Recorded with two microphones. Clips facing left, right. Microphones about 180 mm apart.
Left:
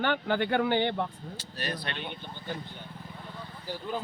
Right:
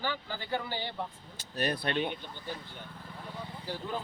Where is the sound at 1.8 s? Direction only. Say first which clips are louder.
Right 6 dB; 45° right (ahead or behind).